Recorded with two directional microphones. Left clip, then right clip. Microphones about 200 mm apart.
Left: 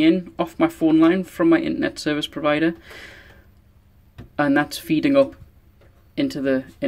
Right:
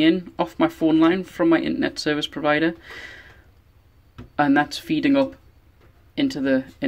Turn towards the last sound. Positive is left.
turn(degrees=0)  # may be behind; listen again after turning